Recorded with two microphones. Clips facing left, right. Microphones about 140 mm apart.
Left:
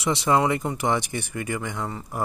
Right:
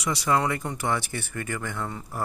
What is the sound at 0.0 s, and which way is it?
Speech, 25° left (ahead or behind).